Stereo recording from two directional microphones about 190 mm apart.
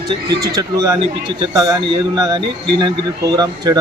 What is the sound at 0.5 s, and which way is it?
Speech, 20° right (ahead or behind).